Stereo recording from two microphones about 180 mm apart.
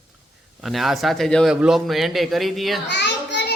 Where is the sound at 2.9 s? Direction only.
75° left (ahead or behind).